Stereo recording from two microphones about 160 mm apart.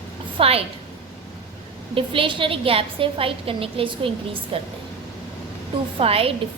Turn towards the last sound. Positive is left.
turn(degrees=-35)  # may be behind; listen again after turning